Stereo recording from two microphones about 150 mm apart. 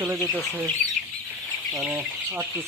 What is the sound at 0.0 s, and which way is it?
Speech, 15° right (ahead or behind).